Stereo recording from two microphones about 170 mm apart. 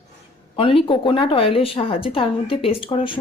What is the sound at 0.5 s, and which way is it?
A woman's voice, 30° left (ahead or behind).